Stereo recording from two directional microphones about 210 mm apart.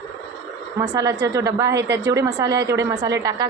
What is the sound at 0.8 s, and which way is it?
A woman's voice, 15° right (ahead or behind).